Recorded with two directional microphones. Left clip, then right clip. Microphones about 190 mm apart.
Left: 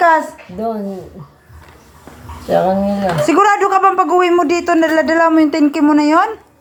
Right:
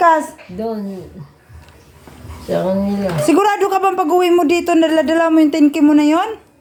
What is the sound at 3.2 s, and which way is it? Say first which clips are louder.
Speech: left 2 dB; 20° right (ahead or behind).